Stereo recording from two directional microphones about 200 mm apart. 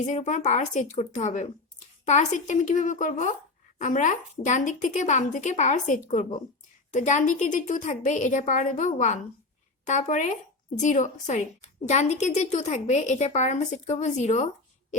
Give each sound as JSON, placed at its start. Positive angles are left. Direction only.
{"t": 0.0, "sound": "a woman's voice", "side_deg": 35}